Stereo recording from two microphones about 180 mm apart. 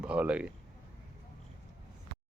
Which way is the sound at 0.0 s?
5° right (ahead or behind).